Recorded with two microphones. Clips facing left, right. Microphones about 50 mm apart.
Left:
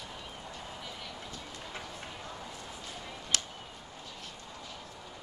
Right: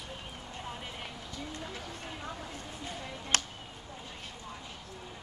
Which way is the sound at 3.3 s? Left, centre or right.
Right.